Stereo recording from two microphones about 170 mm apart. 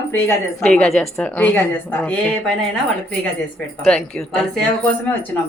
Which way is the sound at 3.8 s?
5° left (ahead or behind).